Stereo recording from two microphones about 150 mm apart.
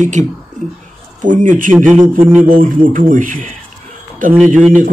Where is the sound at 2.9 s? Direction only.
65° right (ahead or behind).